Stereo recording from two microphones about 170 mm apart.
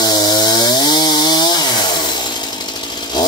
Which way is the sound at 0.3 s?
25° left (ahead or behind).